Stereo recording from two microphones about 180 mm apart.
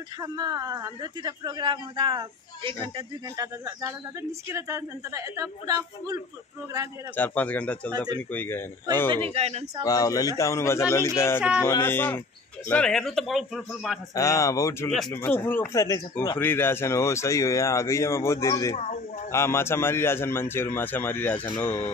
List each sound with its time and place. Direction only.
0.2 s a woman's voice: 20° right (ahead or behind)
7.2 s speech: 10° left (ahead or behind)
9.1 s speech: 35° right (ahead or behind)
9.8 s speech: 20° left (ahead or behind); by 13.9 s centre (ahead or behind)
14.1 s speech: 20° left (ahead or behind)
14.9 s speech: centre (ahead or behind)
21.6 s speech: 20° left (ahead or behind)